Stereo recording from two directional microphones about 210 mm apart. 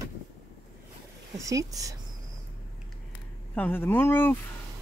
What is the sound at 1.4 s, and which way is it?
Speech, 15° right (ahead or behind).